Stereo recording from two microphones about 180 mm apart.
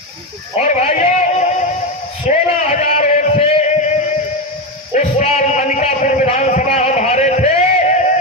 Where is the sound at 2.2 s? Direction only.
40° left (ahead or behind).